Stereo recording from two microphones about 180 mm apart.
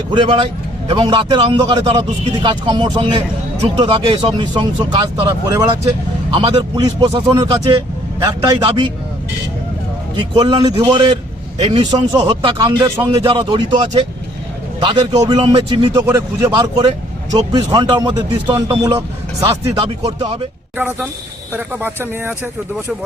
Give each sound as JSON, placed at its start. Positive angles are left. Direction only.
{"t": 0.1, "sound": "a man's voice", "side_deg": -25}
{"t": 10.2, "sound": "a man's voice", "side_deg": -25}